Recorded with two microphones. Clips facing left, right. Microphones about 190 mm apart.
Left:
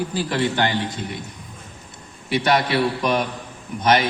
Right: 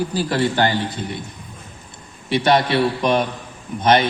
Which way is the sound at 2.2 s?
25° right (ahead or behind).